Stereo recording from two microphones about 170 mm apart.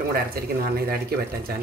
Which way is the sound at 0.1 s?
60° right (ahead or behind).